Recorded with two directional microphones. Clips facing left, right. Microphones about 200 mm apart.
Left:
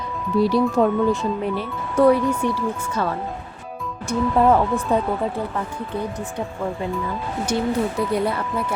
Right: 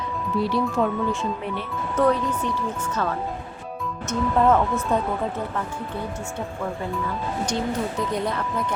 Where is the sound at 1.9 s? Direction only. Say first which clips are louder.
Left 5 dB; 10° left (ahead or behind).